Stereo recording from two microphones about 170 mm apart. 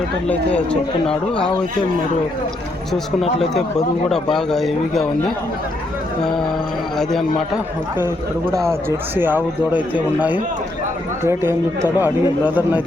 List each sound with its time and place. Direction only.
0.3 s speech: 5° left (ahead or behind)
4.1 s speech: centre (ahead or behind)
7.0 s speech: centre (ahead or behind)
9.1 s speech: 10° right (ahead or behind)